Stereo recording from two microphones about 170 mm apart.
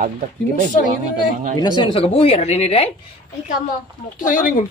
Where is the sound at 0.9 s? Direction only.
45° right (ahead or behind).